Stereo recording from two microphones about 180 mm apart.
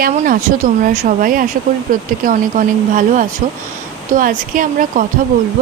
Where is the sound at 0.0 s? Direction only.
50° right (ahead or behind).